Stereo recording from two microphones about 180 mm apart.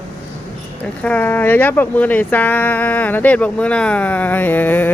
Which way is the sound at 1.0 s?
10° left (ahead or behind).